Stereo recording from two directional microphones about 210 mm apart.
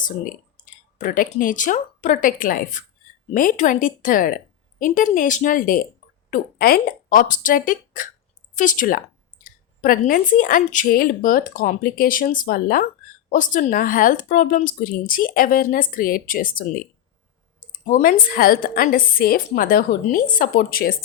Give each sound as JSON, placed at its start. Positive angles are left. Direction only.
{"t": 0.0, "sound": "a woman's voice", "side_deg": 40}